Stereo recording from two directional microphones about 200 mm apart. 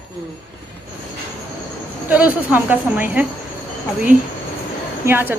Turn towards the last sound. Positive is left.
turn(degrees=-10)  # may be behind; listen again after turning